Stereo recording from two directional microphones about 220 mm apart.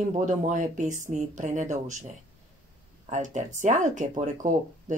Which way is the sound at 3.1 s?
35° right (ahead or behind).